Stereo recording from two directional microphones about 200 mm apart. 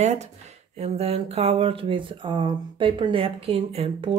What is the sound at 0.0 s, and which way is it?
Speech, 35° right (ahead or behind).